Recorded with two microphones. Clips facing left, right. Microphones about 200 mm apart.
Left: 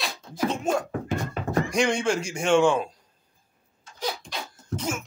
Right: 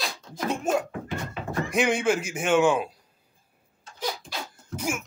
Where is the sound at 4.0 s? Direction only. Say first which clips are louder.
Left 1 dB; 5° right (ahead or behind).